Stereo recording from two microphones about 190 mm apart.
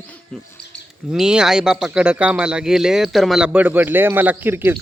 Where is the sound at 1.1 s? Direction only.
5° right (ahead or behind).